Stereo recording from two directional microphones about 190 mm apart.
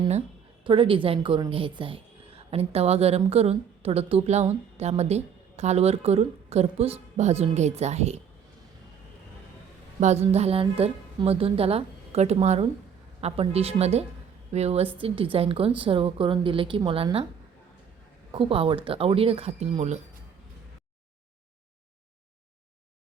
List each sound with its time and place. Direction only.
0.6 s a woman's voice: 25° right (ahead or behind)
10.0 s a woman's voice: 35° right (ahead or behind)
18.3 s speech: 30° right (ahead or behind)